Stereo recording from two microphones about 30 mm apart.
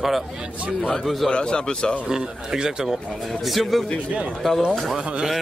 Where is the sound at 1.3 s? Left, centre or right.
Left.